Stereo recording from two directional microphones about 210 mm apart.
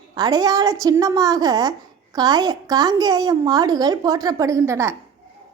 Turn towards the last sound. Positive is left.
turn(degrees=-15)  # may be behind; listen again after turning